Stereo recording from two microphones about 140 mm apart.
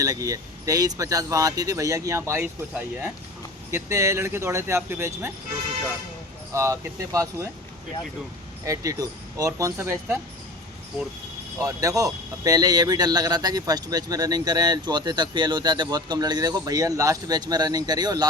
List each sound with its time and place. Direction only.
0.0 s speech: 25° right (ahead or behind)
6.5 s speech: 20° right (ahead or behind)
8.6 s speech: 25° right (ahead or behind)
11.6 s speech: 25° right (ahead or behind)